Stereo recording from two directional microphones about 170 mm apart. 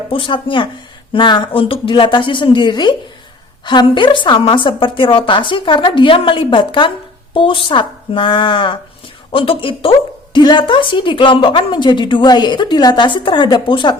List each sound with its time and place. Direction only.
0.1 s a woman's voice: 30° left (ahead or behind)